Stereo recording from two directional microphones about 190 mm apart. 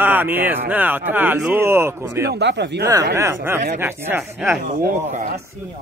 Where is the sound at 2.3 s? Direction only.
65° right (ahead or behind).